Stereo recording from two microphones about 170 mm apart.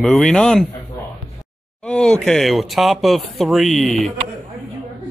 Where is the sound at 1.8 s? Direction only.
5° left (ahead or behind).